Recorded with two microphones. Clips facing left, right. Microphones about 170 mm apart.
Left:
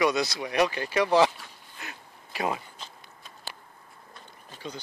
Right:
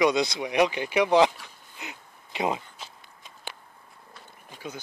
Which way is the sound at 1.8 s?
20° right (ahead or behind).